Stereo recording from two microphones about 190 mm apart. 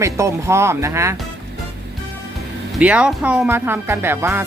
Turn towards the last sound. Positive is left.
turn(degrees=-10)  # may be behind; listen again after turning